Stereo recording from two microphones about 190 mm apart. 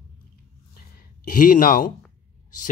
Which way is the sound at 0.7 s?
50° left (ahead or behind).